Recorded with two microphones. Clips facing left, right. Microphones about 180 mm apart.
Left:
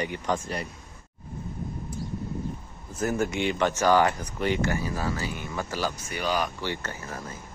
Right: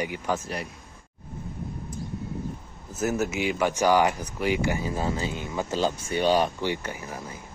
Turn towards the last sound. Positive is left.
turn(degrees=-15)  # may be behind; listen again after turning